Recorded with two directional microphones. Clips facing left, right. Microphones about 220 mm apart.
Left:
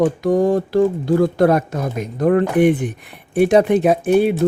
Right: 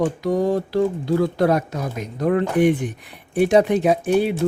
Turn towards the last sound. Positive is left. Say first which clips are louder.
# left 4 dB
turn(degrees=55)  # may be behind; listen again after turning